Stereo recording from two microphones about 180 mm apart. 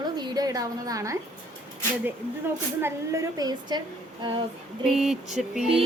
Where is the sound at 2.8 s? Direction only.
15° right (ahead or behind).